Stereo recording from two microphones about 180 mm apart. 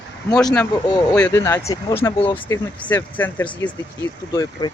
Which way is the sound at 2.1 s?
30° left (ahead or behind).